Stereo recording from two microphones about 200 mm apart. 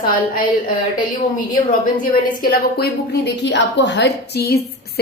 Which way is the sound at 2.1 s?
50° left (ahead or behind).